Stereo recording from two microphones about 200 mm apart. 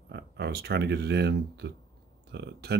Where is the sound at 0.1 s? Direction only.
55° right (ahead or behind).